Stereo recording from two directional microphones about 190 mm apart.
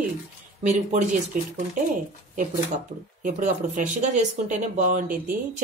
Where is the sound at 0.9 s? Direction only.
40° right (ahead or behind).